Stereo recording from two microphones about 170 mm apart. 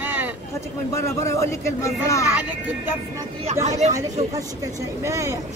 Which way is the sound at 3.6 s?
40° right (ahead or behind).